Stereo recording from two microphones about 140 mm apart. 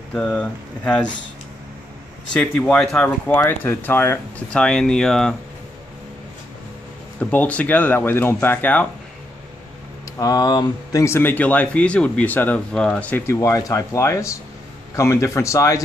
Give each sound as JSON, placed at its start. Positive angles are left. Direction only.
{"t": 0.1, "sound": "speech", "side_deg": 5}
{"t": 2.3, "sound": "speech", "side_deg": 5}
{"t": 4.5, "sound": "speech", "side_deg": 5}
{"t": 7.2, "sound": "speech", "side_deg": 10}
{"t": 10.1, "sound": "speech", "side_deg": 25}
{"t": 13.4, "sound": "speech", "side_deg": 25}